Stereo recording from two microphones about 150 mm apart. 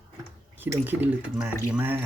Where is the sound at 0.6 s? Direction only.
10° right (ahead or behind).